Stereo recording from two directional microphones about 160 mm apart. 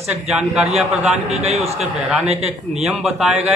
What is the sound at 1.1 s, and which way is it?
Speech, 45° right (ahead or behind).